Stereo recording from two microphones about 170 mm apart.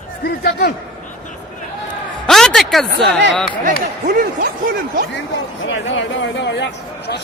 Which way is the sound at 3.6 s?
60° right (ahead or behind).